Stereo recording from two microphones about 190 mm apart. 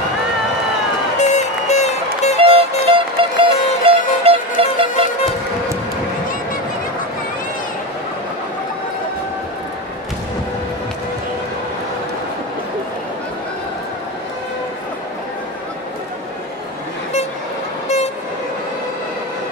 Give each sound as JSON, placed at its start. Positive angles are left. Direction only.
{"t": 1.2, "sound": "music", "side_deg": 35}
{"t": 2.5, "sound": "music", "side_deg": -25}
{"t": 17.8, "sound": "vehicle", "side_deg": 35}